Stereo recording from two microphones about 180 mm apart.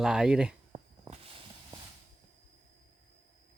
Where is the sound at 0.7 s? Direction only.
35° right (ahead or behind).